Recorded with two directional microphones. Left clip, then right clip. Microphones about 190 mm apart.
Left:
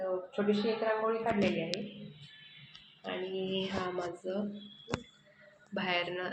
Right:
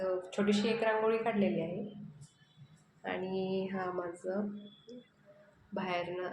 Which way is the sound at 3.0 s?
10° right (ahead or behind).